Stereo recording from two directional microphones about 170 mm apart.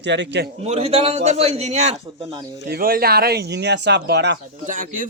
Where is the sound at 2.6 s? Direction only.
60° right (ahead or behind); by 4.4 s 80° right.